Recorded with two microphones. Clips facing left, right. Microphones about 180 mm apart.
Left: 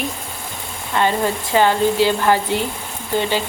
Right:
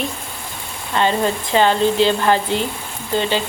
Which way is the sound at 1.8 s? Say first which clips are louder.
Even; 10° left (ahead or behind).